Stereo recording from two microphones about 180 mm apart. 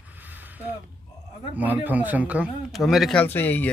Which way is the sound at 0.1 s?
10° right (ahead or behind).